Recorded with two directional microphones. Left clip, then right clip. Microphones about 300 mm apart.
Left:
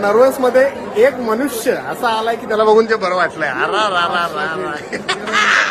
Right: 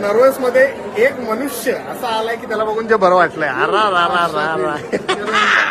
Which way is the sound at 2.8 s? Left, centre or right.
Centre.